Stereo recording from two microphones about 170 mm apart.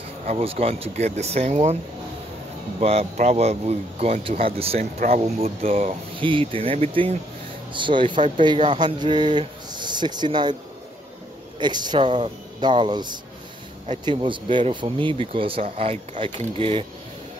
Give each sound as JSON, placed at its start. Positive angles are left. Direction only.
{"t": 0.3, "sound": "speech", "side_deg": -35}
{"t": 2.8, "sound": "speech", "side_deg": -40}
{"t": 4.9, "sound": "speech", "side_deg": -50}
{"t": 5.2, "sound": "speech", "side_deg": -35}
{"t": 5.7, "sound": "speech", "side_deg": -50}
{"t": 6.1, "sound": "speech", "side_deg": -30}
{"t": 11.6, "sound": "speech", "side_deg": -25}